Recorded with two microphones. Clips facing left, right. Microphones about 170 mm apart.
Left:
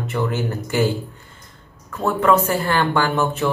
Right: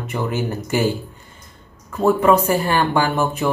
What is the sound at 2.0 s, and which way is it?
Speech, 10° right (ahead or behind).